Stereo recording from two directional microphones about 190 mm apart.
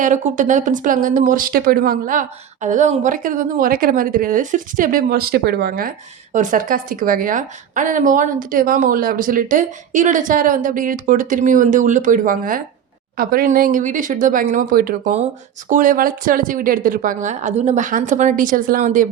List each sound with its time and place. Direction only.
0.0 s a woman's voice: 40° right (ahead or behind)
6.3 s a woman's voice: 40° right (ahead or behind)